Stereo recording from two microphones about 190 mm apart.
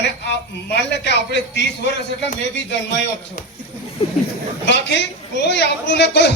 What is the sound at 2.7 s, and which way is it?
Speech, 70° left (ahead or behind).